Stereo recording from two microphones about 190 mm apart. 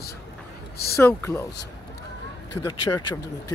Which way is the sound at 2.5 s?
20° left (ahead or behind).